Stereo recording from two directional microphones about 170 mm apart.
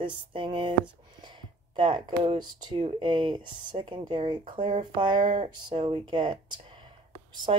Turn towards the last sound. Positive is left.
turn(degrees=-35)  # may be behind; listen again after turning